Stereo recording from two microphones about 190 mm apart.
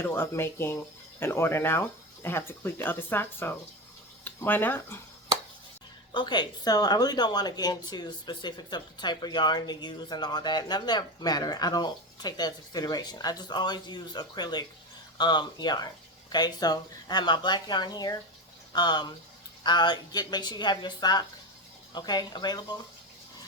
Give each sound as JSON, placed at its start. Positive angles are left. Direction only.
{"t": 0.0, "sound": "speech", "side_deg": 10}
{"t": 6.1, "sound": "speech", "side_deg": 25}